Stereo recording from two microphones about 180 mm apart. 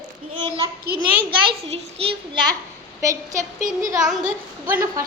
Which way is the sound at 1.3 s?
25° right (ahead or behind).